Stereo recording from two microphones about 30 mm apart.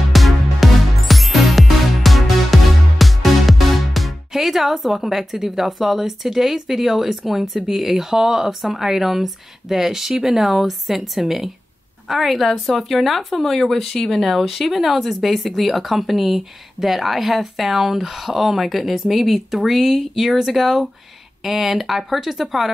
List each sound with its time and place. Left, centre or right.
0.1 s music: centre
5.0 s a woman's voice: centre